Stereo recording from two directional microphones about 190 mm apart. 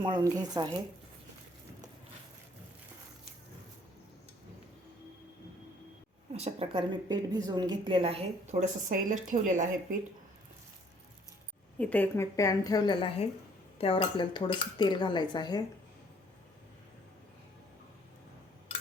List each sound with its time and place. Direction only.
0.0 s a woman's voice: 20° right (ahead or behind)
6.3 s speech: 35° right (ahead or behind)
7.1 s a woman's voice: 20° right (ahead or behind)
8.9 s speech: 45° right (ahead or behind)
11.8 s speech: 10° left (ahead or behind)